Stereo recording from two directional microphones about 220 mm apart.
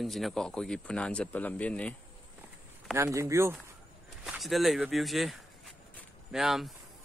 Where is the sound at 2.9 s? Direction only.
15° right (ahead or behind).